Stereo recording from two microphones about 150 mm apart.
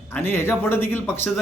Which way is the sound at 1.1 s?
Centre (ahead or behind).